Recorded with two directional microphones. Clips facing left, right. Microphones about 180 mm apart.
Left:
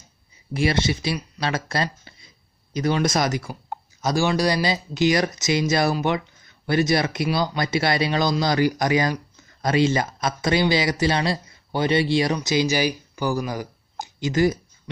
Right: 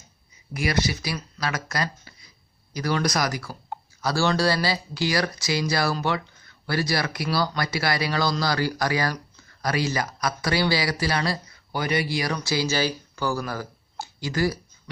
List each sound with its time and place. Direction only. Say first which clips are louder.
0.5 s speech: left 4 dB; 25° left (ahead or behind)